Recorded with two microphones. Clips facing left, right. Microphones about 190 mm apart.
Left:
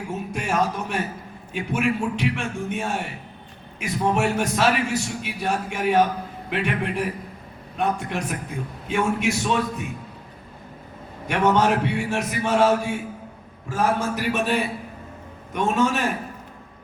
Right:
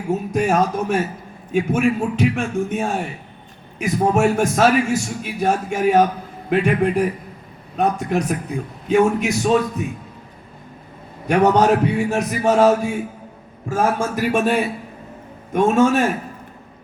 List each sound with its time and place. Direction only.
0.1 s a man's voice: 40° right (ahead or behind)
11.3 s a man's voice: 40° right (ahead or behind)